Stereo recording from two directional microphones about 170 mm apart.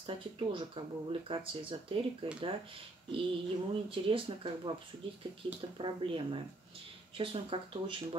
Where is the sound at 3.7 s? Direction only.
30° right (ahead or behind).